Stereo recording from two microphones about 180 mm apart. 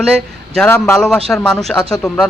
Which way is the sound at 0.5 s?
10° left (ahead or behind).